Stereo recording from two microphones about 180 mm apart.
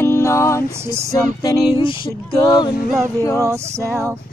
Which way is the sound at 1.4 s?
30° left (ahead or behind).